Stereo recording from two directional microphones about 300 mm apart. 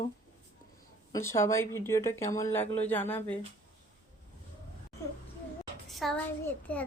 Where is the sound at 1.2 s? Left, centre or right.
Centre.